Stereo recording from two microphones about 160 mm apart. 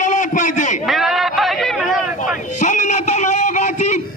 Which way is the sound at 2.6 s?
50° left (ahead or behind).